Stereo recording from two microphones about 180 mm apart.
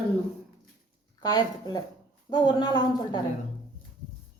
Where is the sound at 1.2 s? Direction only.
25° left (ahead or behind).